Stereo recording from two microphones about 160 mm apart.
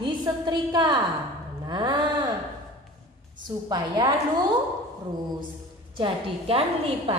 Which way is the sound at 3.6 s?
25° right (ahead or behind).